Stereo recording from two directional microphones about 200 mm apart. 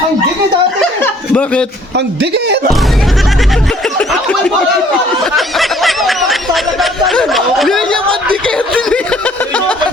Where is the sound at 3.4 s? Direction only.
Centre (ahead or behind).